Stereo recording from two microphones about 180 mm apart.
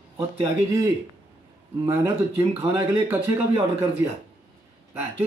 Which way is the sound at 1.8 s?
15° right (ahead or behind).